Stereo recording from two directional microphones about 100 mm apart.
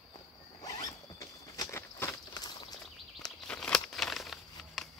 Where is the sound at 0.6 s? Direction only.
35° left (ahead or behind).